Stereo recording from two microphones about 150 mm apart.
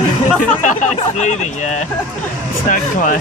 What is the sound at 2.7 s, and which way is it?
Speech, 65° left (ahead or behind).